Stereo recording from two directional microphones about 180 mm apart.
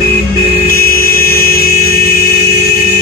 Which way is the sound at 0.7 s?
55° left (ahead or behind).